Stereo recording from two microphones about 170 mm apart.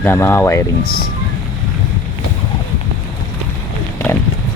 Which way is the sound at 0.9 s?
65° left (ahead or behind).